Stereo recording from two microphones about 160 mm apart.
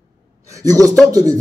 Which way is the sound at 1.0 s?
20° right (ahead or behind).